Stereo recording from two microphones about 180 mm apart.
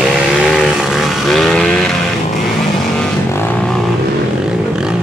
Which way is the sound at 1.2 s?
Centre (ahead or behind).